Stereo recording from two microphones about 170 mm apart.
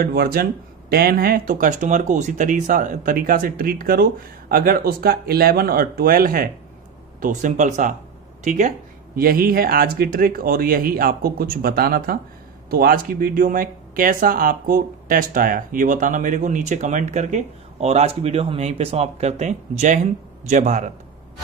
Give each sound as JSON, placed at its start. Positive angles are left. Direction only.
{"t": 0.0, "sound": "speech", "side_deg": -65}